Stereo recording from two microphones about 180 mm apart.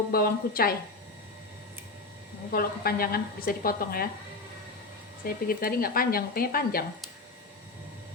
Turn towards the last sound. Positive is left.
turn(degrees=55)  # may be behind; listen again after turning